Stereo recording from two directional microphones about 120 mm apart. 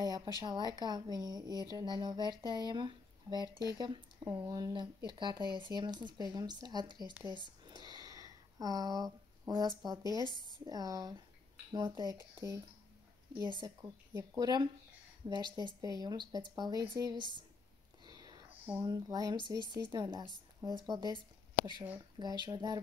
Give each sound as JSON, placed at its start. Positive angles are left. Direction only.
{"t": 0.0, "sound": "a sound", "side_deg": -35}
{"t": 0.4, "sound": "speech", "side_deg": -35}
{"t": 4.2, "sound": "speech", "side_deg": -20}
{"t": 7.2, "sound": "a sound", "side_deg": -40}
{"t": 10.3, "sound": "speech", "side_deg": 35}
{"t": 10.6, "sound": "speech", "side_deg": -30}
{"t": 13.7, "sound": "speech", "side_deg": -25}
{"t": 18.0, "sound": "a sound", "side_deg": -35}
{"t": 18.9, "sound": "speech", "side_deg": -30}
{"t": 22.2, "sound": "speech", "side_deg": -35}